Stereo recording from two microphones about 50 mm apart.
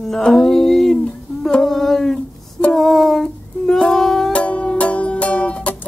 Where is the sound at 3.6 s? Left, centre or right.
Centre.